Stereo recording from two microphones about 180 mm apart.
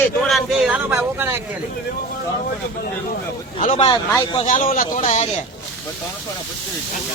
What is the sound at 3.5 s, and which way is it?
Speech, 35° left (ahead or behind).